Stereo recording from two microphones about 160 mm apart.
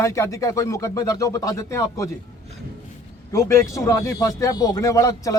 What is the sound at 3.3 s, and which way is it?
Speech, 20° left (ahead or behind).